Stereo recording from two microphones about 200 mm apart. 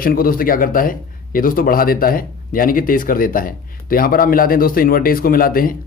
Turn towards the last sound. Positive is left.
turn(degrees=45)  # may be behind; listen again after turning